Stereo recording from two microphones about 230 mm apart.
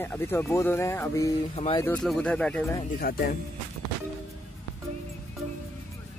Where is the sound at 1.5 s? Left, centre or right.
Left.